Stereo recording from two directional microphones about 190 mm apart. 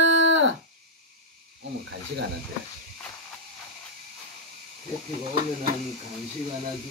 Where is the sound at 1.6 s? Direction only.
65° right (ahead or behind).